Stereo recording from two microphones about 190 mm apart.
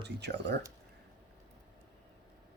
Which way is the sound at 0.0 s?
65° right (ahead or behind).